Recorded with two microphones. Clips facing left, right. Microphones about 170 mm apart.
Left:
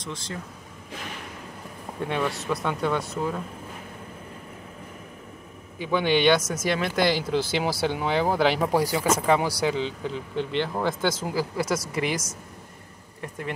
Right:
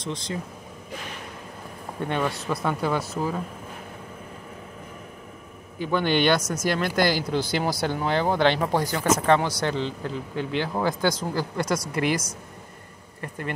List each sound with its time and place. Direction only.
0.0 s speech: 20° right (ahead or behind)
2.0 s speech: centre (ahead or behind)
5.8 s speech: centre (ahead or behind)